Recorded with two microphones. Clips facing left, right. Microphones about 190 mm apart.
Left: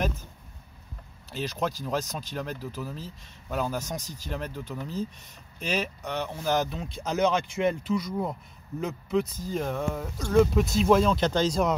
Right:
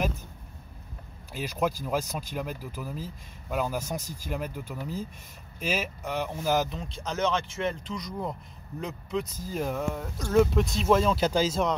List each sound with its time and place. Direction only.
1.3 s speech: 10° right (ahead or behind)
6.8 s speech: 10° left (ahead or behind)